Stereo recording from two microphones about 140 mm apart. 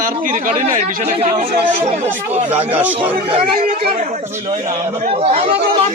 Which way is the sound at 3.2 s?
40° right (ahead or behind).